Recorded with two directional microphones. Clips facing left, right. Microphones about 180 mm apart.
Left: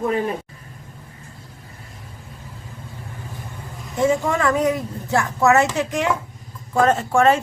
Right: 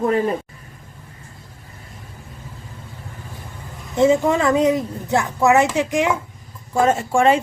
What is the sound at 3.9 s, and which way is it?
A woman's voice, 20° right (ahead or behind).